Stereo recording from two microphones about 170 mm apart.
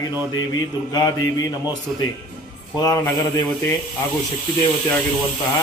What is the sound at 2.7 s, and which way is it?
Mantra, 20° left (ahead or behind).